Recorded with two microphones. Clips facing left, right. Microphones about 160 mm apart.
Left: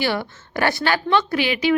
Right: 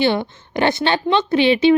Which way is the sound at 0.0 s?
20° right (ahead or behind).